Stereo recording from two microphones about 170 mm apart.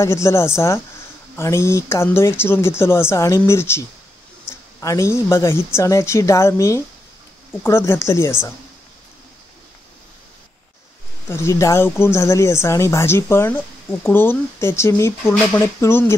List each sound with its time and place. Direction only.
0.0 s speech: 15° left (ahead or behind)
11.2 s speech: 15° left (ahead or behind)